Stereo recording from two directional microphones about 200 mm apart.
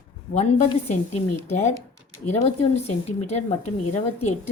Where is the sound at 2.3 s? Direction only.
30° left (ahead or behind).